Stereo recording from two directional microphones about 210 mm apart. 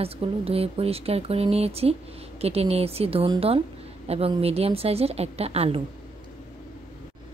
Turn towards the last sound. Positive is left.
turn(degrees=-30)  # may be behind; listen again after turning